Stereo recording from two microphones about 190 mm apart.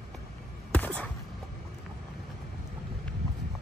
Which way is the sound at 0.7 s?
5° left (ahead or behind).